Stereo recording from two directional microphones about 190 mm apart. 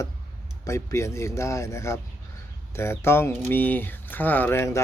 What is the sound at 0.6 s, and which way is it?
Speech, 15° left (ahead or behind).